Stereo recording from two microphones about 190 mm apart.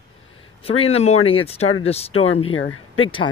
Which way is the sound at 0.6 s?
30° left (ahead or behind).